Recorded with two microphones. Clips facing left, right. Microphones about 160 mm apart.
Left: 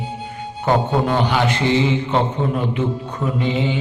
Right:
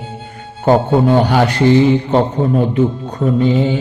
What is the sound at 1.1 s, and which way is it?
A man's voice, 45° right (ahead or behind).